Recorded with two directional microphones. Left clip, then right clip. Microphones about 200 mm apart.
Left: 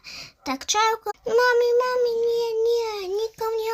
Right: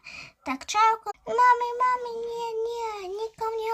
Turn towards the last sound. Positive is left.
turn(degrees=-30)  # may be behind; listen again after turning